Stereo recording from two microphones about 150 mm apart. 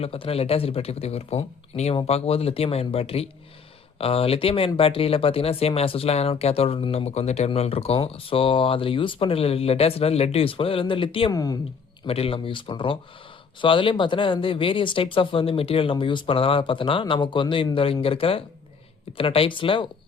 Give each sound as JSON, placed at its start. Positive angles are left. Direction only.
{"t": 0.0, "sound": "speech", "side_deg": 40}
{"t": 11.3, "sound": "speech", "side_deg": 25}
{"t": 12.0, "sound": "speech", "side_deg": 40}